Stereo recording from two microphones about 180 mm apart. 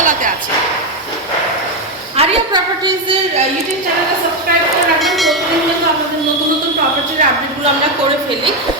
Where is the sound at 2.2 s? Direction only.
35° right (ahead or behind).